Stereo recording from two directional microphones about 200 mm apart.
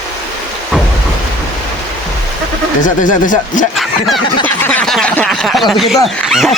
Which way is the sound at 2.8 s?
40° left (ahead or behind).